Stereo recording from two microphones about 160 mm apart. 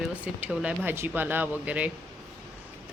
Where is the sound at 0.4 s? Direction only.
10° right (ahead or behind).